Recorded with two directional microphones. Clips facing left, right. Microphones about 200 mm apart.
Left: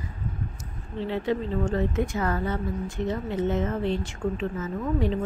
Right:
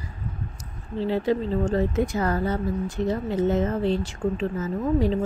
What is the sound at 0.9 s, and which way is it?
A woman's voice, 35° right (ahead or behind).